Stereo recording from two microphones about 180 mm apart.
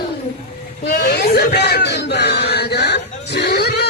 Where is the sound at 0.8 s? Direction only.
55° left (ahead or behind).